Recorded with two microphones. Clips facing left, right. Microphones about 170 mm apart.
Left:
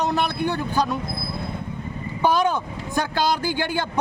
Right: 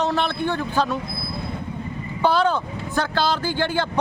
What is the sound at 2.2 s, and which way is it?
Speech, 15° left (ahead or behind).